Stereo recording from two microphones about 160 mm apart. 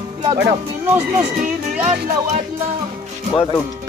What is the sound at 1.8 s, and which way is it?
Speech, 40° right (ahead or behind).